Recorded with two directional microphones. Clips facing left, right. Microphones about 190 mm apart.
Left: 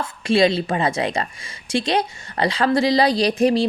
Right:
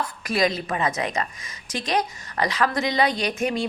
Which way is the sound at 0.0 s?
30° left (ahead or behind).